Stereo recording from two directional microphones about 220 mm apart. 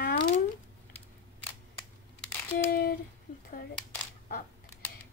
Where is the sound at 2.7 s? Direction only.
45° left (ahead or behind).